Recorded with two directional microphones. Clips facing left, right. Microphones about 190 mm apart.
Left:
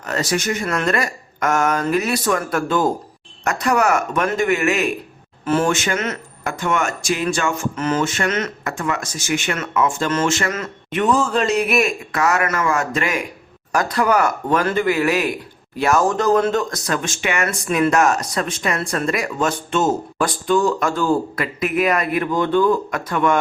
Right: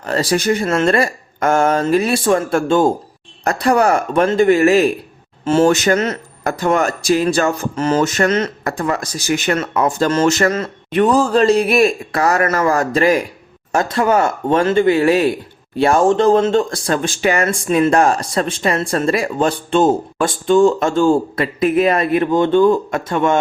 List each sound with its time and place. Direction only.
0.0 s speech: 30° right (ahead or behind)